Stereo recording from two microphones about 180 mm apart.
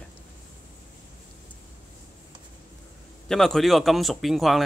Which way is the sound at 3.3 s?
5° left (ahead or behind).